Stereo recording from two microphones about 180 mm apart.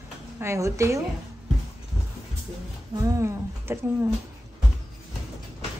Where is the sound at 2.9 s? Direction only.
20° right (ahead or behind).